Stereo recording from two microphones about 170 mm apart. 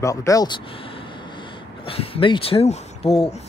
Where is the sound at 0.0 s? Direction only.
20° left (ahead or behind).